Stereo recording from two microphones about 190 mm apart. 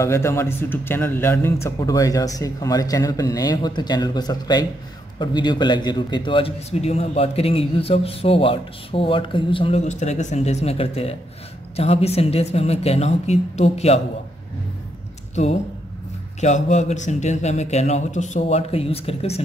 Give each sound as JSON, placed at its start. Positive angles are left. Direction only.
{"t": 0.0, "sound": "a man's voice", "side_deg": 15}
{"t": 16.3, "sound": "a man's voice", "side_deg": 40}